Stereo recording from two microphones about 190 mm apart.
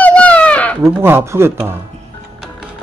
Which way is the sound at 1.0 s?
15° right (ahead or behind).